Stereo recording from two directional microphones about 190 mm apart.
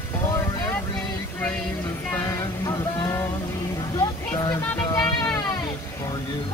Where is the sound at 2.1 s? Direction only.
15° left (ahead or behind).